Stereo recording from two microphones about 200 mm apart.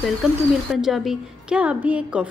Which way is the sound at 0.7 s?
Centre (ahead or behind).